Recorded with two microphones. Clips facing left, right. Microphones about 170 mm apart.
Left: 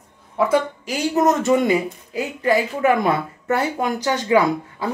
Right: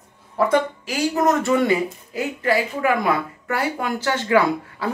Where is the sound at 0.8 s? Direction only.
20° left (ahead or behind).